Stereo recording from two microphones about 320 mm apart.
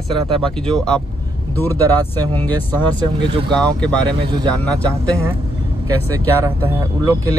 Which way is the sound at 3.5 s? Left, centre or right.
Centre.